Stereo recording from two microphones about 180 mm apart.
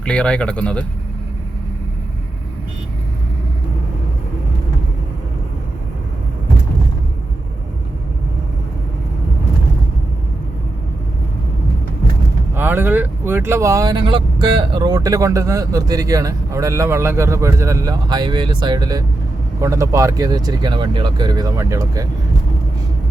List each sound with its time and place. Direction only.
0.0 s speech: 5° left (ahead or behind)
12.5 s speech: 10° right (ahead or behind)